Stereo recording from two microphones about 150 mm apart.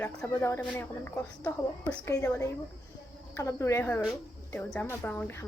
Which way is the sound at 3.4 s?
20° left (ahead or behind).